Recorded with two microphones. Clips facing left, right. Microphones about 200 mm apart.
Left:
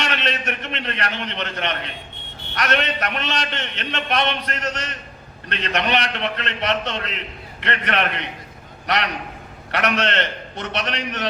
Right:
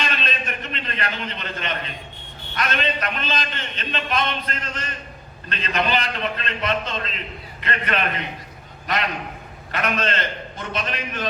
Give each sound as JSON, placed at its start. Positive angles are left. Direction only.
{"t": 0.0, "sound": "a man's voice", "side_deg": 75}
{"t": 9.7, "sound": "a man's voice", "side_deg": 75}